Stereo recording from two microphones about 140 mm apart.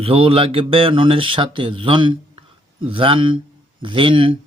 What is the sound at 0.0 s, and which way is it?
Speech, 45° right (ahead or behind).